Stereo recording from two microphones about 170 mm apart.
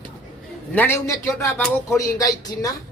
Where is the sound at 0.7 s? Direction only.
10° left (ahead or behind).